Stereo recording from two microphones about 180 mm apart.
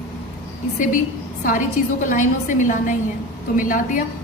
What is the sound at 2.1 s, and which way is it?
A woman's voice, 45° left (ahead or behind).